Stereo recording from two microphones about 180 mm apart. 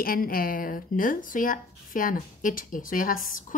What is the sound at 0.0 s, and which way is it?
Speech, 55° left (ahead or behind).